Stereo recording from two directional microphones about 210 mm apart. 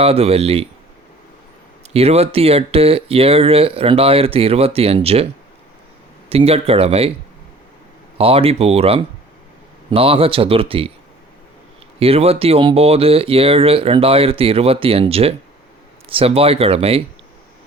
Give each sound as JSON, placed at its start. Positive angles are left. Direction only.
{"t": 0.0, "sound": "speech", "side_deg": -30}
{"t": 1.9, "sound": "speech", "side_deg": -30}
{"t": 8.2, "sound": "speech", "side_deg": -25}
{"t": 11.9, "sound": "speech", "side_deg": -30}